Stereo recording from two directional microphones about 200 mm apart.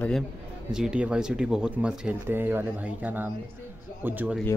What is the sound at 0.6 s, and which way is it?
Speech, 5° right (ahead or behind).